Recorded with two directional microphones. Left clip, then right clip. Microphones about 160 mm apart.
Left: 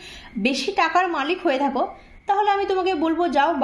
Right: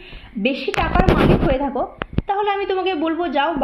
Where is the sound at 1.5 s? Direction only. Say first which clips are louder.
Right 1 dB; 15° left (ahead or behind).